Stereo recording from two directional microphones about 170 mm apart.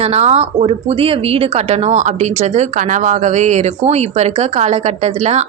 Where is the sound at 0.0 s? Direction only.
40° right (ahead or behind).